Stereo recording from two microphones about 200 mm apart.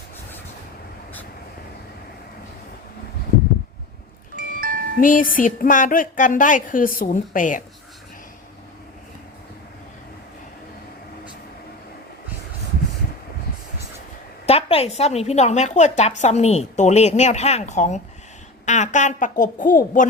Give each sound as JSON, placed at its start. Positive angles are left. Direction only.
{"t": 4.4, "sound": "music", "side_deg": -45}
{"t": 4.9, "sound": "a woman's voice", "side_deg": 40}
{"t": 14.4, "sound": "a woman's voice", "side_deg": 30}